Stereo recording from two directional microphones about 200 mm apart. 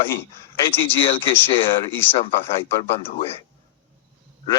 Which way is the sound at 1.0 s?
25° left (ahead or behind).